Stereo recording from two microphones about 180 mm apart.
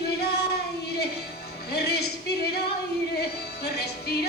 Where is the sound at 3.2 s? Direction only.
60° left (ahead or behind).